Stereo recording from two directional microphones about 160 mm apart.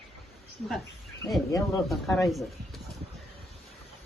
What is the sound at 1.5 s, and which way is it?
Speech, 20° left (ahead or behind).